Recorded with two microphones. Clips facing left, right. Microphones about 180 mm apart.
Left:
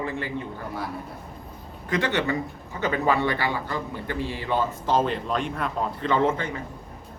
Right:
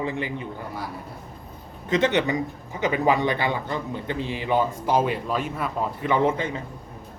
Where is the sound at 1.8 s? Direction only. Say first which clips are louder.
Right 3 dB; 20° right (ahead or behind).